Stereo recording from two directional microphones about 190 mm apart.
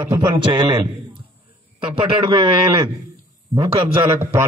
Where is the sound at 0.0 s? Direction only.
20° right (ahead or behind).